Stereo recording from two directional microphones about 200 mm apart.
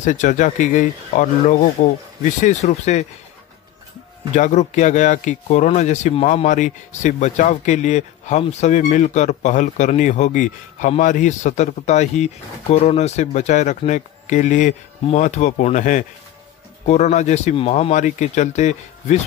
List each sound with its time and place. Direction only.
0.0 s speech: 40° left (ahead or behind)
4.4 s speech: 35° left (ahead or behind)